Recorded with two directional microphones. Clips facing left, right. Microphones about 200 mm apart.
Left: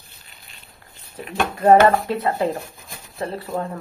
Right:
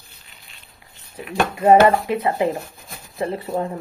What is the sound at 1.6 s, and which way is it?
A woman's voice, 15° right (ahead or behind).